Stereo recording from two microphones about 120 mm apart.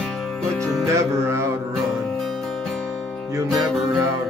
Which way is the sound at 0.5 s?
5° left (ahead or behind).